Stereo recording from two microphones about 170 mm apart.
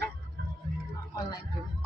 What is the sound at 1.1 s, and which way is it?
Speech, 20° left (ahead or behind).